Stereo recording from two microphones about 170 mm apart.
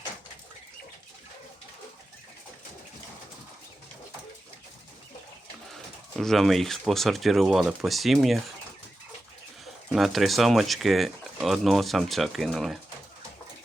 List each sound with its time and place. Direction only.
6.1 s speech: centre (ahead or behind)
9.9 s speech: centre (ahead or behind)